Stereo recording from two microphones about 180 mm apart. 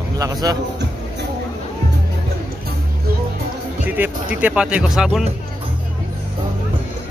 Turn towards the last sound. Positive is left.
turn(degrees=-5)  # may be behind; listen again after turning